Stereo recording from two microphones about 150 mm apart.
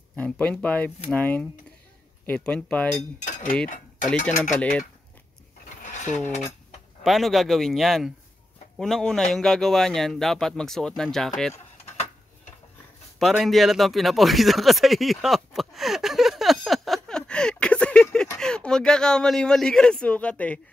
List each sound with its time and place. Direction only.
0.1 s speech: 10° left (ahead or behind)
3.2 s speech: 60° left (ahead or behind)
4.6 s speech: 10° left (ahead or behind)
5.8 s a sound: 55° left (ahead or behind)
7.0 s a man's voice: centre (ahead or behind)
13.2 s a sound: centre (ahead or behind)
18.4 s a man's voice: 5° left (ahead or behind)